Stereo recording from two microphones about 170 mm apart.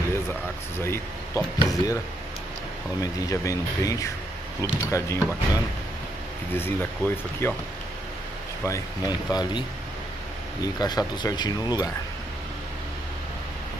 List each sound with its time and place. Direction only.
0.1 s speech: 15° left (ahead or behind)
3.0 s speech: 20° left (ahead or behind)
6.5 s speech: 15° left (ahead or behind)
8.6 s speech: 20° left (ahead or behind)